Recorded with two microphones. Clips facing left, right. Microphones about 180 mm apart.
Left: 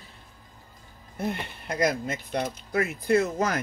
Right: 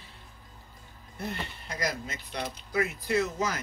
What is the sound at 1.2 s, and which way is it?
Speech, 55° left (ahead or behind).